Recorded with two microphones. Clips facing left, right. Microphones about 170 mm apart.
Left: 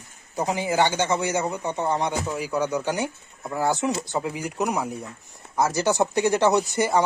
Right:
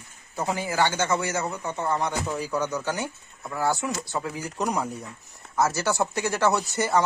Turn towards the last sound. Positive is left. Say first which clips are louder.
# left 3 dB
turn(degrees=15)  # may be behind; listen again after turning